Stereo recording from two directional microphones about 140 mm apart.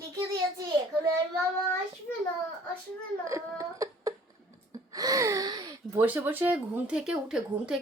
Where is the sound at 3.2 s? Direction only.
20° right (ahead or behind).